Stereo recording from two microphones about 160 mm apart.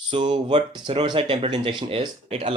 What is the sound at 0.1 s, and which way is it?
Speech, 30° right (ahead or behind).